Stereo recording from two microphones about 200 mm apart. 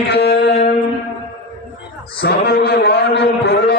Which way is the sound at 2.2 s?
50° left (ahead or behind).